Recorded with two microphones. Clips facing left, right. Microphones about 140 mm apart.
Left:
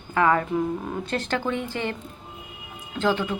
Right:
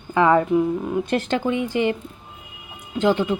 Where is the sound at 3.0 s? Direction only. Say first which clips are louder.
Right 5 dB; 20° right (ahead or behind).